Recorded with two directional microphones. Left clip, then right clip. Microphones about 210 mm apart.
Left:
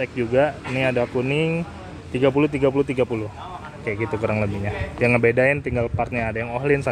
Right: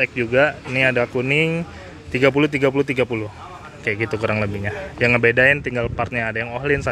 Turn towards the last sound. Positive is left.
turn(degrees=0)  # may be behind; listen again after turning